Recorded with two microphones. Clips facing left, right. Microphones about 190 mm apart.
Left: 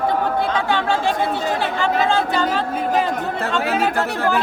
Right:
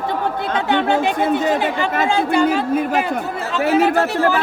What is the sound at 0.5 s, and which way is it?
Speech, 20° right (ahead or behind).